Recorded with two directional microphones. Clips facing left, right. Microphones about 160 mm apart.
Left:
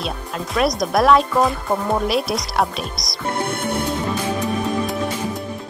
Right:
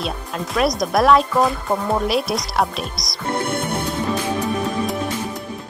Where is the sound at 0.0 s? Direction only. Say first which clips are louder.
Right 1 dB; centre (ahead or behind).